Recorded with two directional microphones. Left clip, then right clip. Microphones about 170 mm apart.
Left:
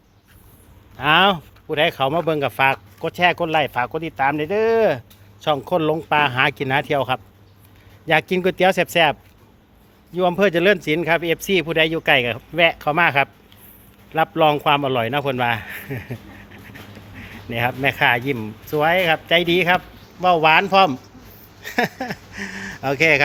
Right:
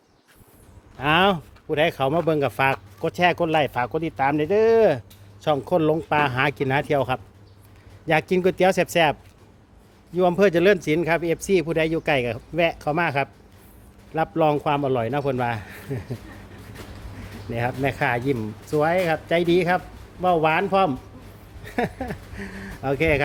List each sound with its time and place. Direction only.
0.9 s speech: 15° right (ahead or behind)
10.2 s speech: 10° right (ahead or behind)
17.2 s speech: centre (ahead or behind)